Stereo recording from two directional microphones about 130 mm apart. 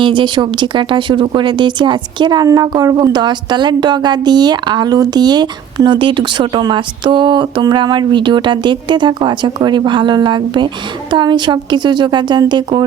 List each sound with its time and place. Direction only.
0.0 s speech: 40° right (ahead or behind)